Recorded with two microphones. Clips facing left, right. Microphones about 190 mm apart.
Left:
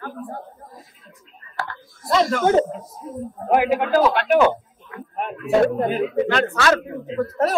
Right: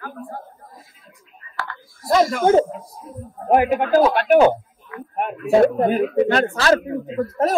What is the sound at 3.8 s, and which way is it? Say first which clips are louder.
Speech: right 2 dB; 45° right (ahead or behind).